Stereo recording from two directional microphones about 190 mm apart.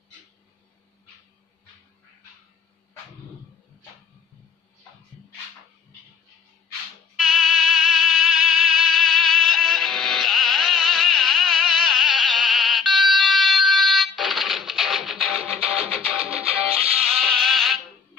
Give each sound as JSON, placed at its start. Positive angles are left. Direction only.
{"t": 7.2, "sound": "music", "side_deg": -5}
{"t": 15.6, "sound": "music", "side_deg": -30}
{"t": 16.1, "sound": "music", "side_deg": -5}